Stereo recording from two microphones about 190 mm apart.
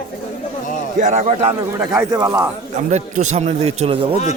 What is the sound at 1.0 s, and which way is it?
Speech, 40° right (ahead or behind).